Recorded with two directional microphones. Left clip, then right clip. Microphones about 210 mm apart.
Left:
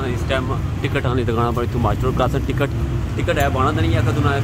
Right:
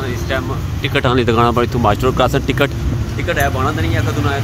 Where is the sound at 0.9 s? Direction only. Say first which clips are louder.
Right 8 dB; 20° right (ahead or behind).